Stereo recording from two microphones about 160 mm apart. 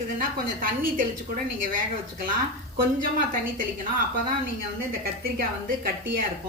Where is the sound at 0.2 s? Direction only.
60° right (ahead or behind).